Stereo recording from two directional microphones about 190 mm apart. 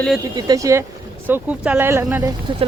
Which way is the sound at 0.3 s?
20° right (ahead or behind).